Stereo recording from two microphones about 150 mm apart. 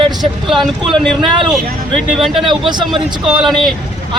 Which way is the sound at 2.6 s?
30° right (ahead or behind).